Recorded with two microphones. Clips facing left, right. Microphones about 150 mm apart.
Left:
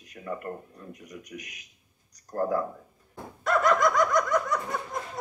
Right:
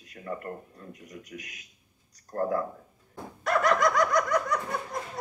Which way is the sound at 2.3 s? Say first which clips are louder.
Left 1 dB; 20° left (ahead or behind).